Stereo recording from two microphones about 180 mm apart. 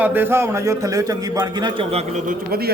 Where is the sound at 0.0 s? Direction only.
10° right (ahead or behind); by 2.0 s 25° right (ahead or behind).